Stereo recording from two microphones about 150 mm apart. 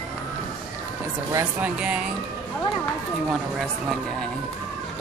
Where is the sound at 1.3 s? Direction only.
20° right (ahead or behind).